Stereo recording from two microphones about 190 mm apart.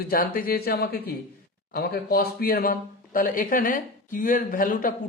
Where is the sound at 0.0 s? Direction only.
50° left (ahead or behind).